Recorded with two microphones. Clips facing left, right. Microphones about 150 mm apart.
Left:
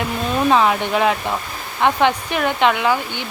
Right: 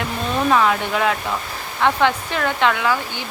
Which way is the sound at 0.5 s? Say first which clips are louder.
Left 1 dB; 20° left (ahead or behind).